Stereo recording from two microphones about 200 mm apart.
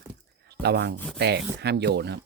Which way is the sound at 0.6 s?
55° right (ahead or behind).